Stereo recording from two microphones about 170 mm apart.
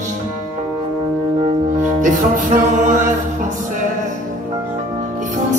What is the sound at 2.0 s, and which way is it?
Music, 50° right (ahead or behind).